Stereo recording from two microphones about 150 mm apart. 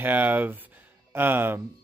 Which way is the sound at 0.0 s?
10° right (ahead or behind).